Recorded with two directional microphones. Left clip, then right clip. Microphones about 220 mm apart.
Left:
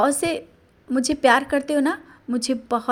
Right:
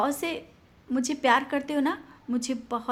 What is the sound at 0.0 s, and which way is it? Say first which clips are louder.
A woman's voice: left 7 dB; 25° left (ahead or behind).